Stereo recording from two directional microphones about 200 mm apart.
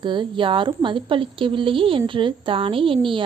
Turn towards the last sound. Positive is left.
turn(degrees=-25)  # may be behind; listen again after turning